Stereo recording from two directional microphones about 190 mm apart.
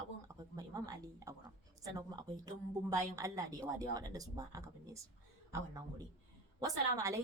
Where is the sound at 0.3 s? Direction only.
20° right (ahead or behind).